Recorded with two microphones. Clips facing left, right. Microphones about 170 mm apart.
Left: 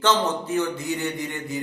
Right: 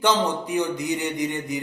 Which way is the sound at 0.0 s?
15° right (ahead or behind).